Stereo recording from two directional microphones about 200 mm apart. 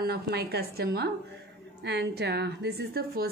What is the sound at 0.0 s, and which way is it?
A woman's voice, 55° right (ahead or behind).